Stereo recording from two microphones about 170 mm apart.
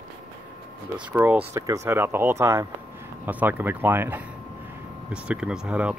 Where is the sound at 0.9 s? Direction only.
10° right (ahead or behind).